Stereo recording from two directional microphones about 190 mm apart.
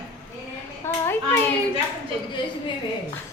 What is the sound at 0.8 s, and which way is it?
Hands, 15° left (ahead or behind).